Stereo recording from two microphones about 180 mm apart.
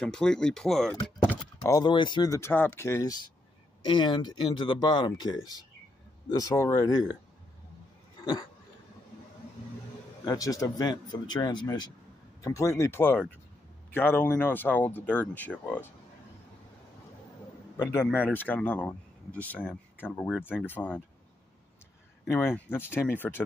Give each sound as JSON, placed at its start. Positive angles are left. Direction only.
{"t": 0.0, "sound": "speech", "side_deg": 5}
{"t": 1.6, "sound": "speech", "side_deg": 20}
{"t": 8.2, "sound": "dog", "side_deg": 20}
{"t": 10.2, "sound": "speech", "side_deg": 20}
{"t": 17.7, "sound": "speech", "side_deg": 10}
{"t": 22.3, "sound": "speech", "side_deg": 15}